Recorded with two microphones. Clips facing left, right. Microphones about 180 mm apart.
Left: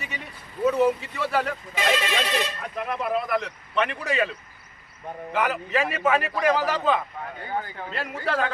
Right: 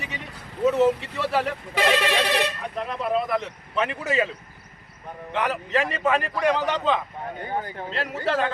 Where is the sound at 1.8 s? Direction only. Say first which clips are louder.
Right 3 dB; 65° right (ahead or behind).